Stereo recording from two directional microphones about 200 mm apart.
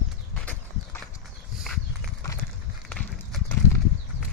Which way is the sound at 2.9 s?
5° left (ahead or behind).